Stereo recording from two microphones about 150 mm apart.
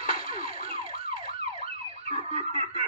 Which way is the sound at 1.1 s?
40° right (ahead or behind).